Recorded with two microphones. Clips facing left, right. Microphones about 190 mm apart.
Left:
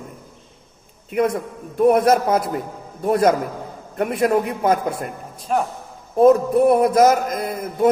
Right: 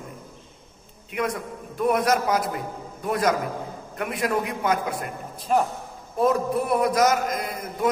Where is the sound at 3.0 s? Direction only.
40° left (ahead or behind).